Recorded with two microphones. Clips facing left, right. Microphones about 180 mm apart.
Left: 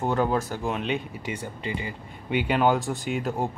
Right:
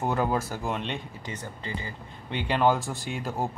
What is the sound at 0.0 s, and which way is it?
Speech, 5° right (ahead or behind).